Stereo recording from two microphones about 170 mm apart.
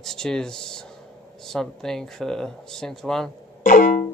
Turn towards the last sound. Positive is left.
turn(degrees=50)  # may be behind; listen again after turning